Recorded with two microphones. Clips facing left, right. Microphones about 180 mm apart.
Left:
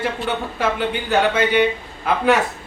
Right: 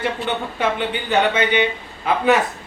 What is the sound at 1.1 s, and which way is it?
A man's voice, 5° left (ahead or behind).